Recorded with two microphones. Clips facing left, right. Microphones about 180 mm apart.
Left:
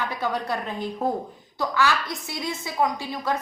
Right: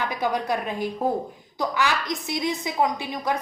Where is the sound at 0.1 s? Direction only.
15° right (ahead or behind).